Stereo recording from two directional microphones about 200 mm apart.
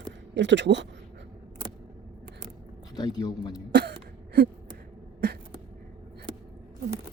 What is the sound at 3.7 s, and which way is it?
Throat clearing, 55° right (ahead or behind).